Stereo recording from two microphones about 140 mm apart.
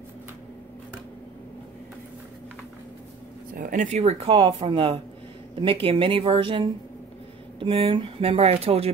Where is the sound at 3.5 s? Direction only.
70° right (ahead or behind).